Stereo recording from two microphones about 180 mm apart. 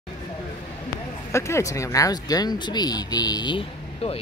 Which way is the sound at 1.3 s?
15° left (ahead or behind).